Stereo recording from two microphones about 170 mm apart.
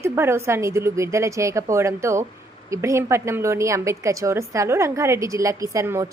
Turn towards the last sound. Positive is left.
turn(degrees=-15)  # may be behind; listen again after turning